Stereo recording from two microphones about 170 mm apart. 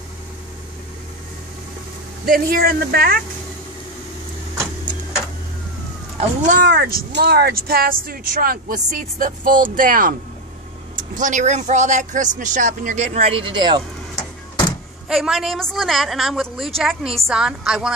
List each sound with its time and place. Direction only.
2.2 s speech: 60° right (ahead or behind)
6.1 s speech: 45° right (ahead or behind)
6.7 s speech: 65° right (ahead or behind)
11.1 s speech: 45° right (ahead or behind); by 13.8 s 25° right (ahead or behind)
15.0 s a woman's voice: centre (ahead or behind)